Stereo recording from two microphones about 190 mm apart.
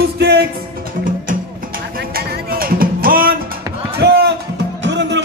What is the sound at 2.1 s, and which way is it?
Music, 50° right (ahead or behind).